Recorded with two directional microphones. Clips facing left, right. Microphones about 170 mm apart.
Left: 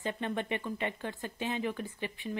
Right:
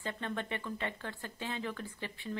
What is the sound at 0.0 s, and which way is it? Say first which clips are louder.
Speech: left 4 dB; 20° left (ahead or behind).